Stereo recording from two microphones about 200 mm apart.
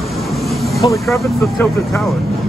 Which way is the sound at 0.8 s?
25° left (ahead or behind).